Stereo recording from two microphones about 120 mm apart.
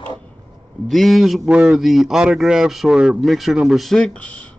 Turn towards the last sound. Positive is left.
turn(degrees=10)  # may be behind; listen again after turning